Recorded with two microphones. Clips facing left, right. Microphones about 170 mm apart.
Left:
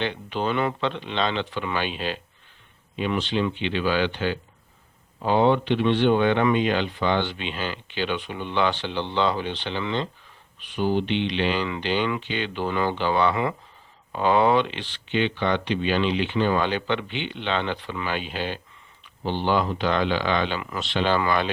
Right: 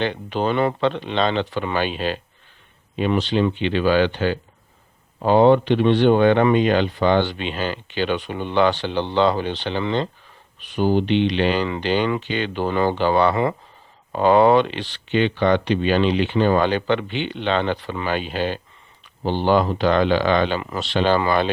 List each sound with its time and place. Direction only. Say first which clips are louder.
0.0 s speech: right 4 dB; 45° right (ahead or behind)